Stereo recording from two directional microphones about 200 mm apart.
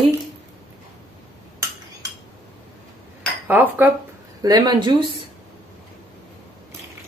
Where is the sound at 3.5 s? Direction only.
10° right (ahead or behind).